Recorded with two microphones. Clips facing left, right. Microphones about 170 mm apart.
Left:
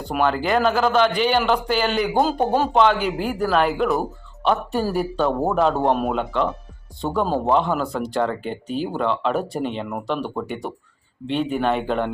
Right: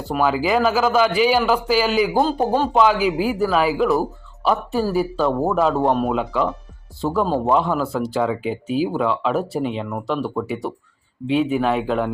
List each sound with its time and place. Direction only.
0.0 s speech: 5° right (ahead or behind)
6.1 s speech: 5° right (ahead or behind)